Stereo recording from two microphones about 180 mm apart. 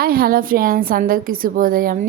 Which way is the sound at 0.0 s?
55° right (ahead or behind).